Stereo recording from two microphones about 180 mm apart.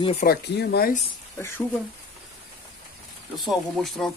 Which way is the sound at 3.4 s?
Centre (ahead or behind).